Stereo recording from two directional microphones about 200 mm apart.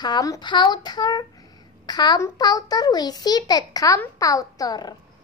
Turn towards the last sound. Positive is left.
turn(degrees=20)  # may be behind; listen again after turning